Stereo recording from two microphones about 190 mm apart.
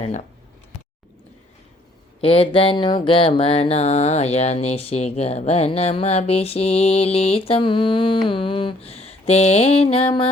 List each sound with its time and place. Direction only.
2.2 s mantra: 30° left (ahead or behind)